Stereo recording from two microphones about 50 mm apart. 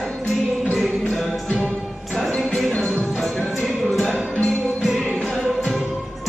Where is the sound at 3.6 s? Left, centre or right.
Centre.